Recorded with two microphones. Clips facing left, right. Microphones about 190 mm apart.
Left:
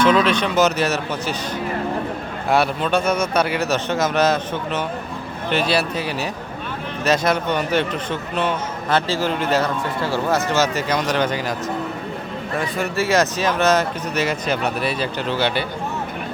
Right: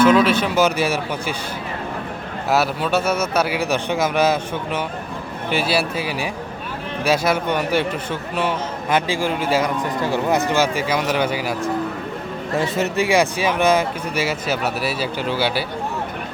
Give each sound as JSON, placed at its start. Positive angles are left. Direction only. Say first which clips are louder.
{"t": 0.0, "sound": "a man's voice", "louder": "right 2 dB", "side_deg": -5}
{"t": 2.5, "sound": "a man's voice", "louder": "left 1 dB", "side_deg": -5}
{"t": 12.5, "sound": "a man's voice", "louder": "right 3 dB", "side_deg": -25}
{"t": 13.1, "sound": "a man's voice", "louder": "left 2 dB", "side_deg": -10}